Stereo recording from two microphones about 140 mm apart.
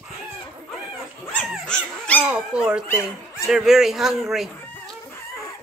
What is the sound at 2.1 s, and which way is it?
Speech, 10° right (ahead or behind).